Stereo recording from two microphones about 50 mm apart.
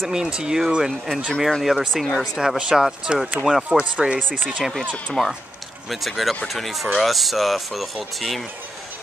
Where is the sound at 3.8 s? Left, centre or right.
Right.